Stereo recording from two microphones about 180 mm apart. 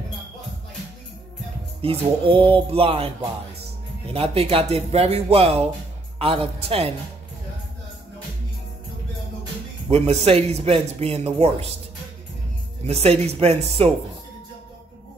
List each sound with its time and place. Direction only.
1.8 s speech: 30° right (ahead or behind)
9.8 s speech: 35° right (ahead or behind)
12.8 s speech: 35° right (ahead or behind)